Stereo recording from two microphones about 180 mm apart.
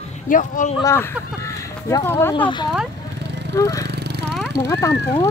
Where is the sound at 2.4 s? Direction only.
25° left (ahead or behind).